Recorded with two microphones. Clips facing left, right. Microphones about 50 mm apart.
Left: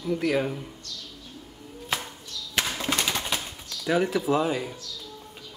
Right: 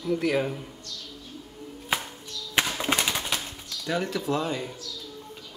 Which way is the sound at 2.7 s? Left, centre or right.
Centre.